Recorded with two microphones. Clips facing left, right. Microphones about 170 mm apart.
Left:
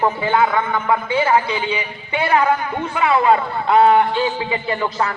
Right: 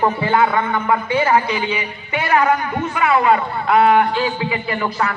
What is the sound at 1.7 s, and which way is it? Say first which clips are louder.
Speech: even; 30° left (ahead or behind).